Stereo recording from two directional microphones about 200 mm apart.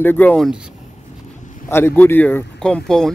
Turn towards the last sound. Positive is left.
turn(degrees=5)  # may be behind; listen again after turning